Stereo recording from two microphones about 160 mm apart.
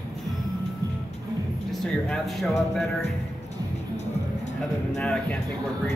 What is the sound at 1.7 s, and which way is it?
Speech, centre (ahead or behind).